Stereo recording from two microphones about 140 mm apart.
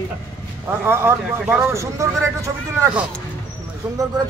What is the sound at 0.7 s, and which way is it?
Speech, 15° right (ahead or behind).